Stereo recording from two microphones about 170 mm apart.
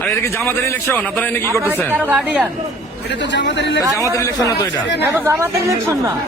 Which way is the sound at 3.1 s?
90° left.